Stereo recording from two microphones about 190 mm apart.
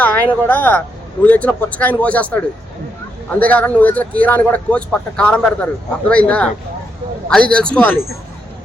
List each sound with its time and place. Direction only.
0.0 s speech: 10° left (ahead or behind)
3.4 s speech: 10° left (ahead or behind)